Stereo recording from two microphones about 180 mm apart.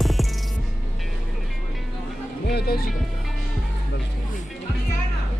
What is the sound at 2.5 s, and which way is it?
Speech, 60° left (ahead or behind).